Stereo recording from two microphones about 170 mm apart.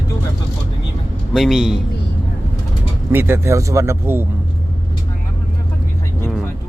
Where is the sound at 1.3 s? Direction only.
Centre (ahead or behind).